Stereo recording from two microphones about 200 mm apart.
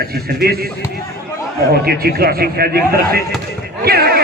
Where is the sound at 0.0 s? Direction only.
50° right (ahead or behind).